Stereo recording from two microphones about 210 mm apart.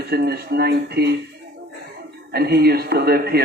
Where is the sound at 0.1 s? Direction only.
50° right (ahead or behind).